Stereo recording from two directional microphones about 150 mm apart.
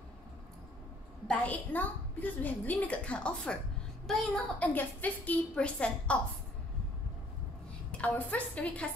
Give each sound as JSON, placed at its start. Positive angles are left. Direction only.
{"t": 1.2, "sound": "a woman's voice", "side_deg": 10}
{"t": 8.0, "sound": "a woman's voice", "side_deg": 10}